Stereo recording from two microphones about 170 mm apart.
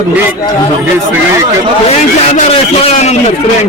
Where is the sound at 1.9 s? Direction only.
35° left (ahead or behind).